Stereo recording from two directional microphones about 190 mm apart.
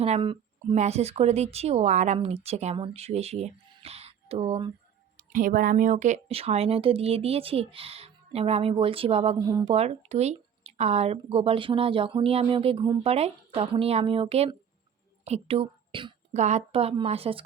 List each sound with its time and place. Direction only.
0.0 s speech: 30° right (ahead or behind)
5.1 s speech: 45° right (ahead or behind); by 16.1 s 25° right (ahead or behind)
16.3 s speech: 35° right (ahead or behind)